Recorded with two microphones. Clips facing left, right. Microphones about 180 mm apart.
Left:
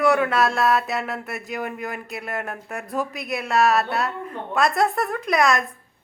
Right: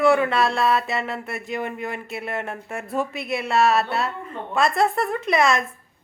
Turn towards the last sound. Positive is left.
turn(degrees=0)  # may be behind; listen again after turning